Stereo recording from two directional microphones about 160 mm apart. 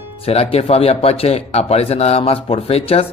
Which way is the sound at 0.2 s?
40° left (ahead or behind).